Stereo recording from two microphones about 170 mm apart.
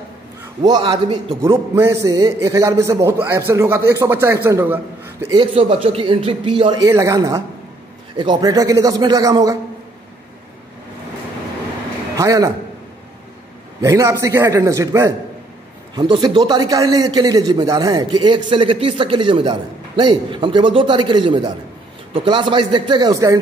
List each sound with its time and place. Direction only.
0.6 s a man's voice: 25° right (ahead or behind)
1.4 s a man's voice: 15° right (ahead or behind)
5.3 s a man's voice: 30° right (ahead or behind)
12.2 s a man's voice: 20° right (ahead or behind)
13.7 s a man's voice: 15° right (ahead or behind)